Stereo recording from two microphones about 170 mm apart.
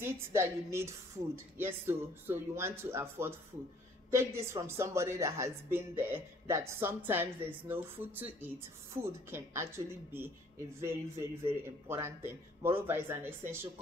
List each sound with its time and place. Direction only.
0.0 s a woman's voice: 15° right (ahead or behind)